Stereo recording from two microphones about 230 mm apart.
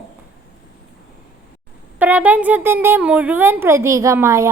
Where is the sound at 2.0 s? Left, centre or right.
Centre.